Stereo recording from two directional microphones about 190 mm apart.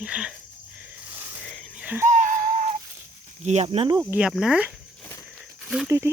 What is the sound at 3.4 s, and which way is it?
Speech, 35° right (ahead or behind).